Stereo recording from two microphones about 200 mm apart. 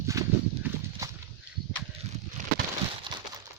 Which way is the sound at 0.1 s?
15° right (ahead or behind).